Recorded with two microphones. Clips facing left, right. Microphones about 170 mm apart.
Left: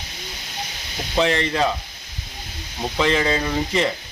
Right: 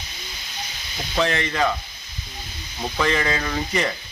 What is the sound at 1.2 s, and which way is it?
Speech, 30° left (ahead or behind).